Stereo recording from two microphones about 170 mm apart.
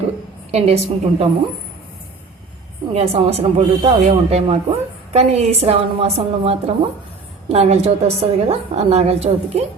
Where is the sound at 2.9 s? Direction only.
35° right (ahead or behind).